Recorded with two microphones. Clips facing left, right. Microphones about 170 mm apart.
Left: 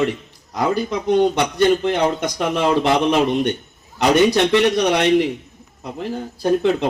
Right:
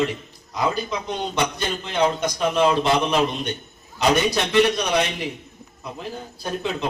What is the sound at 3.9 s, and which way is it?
A man's voice, 80° left.